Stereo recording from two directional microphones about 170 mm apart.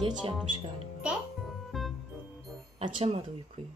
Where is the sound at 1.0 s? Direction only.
5° right (ahead or behind).